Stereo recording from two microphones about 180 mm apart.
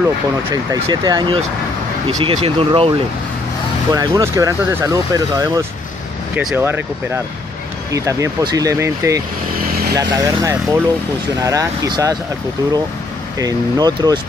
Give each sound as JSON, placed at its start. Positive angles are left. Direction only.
{"t": 0.8, "sound": "speech", "side_deg": -25}
{"t": 3.9, "sound": "speech", "side_deg": -20}
{"t": 7.9, "sound": "speech", "side_deg": -15}
{"t": 13.4, "sound": "speech", "side_deg": -20}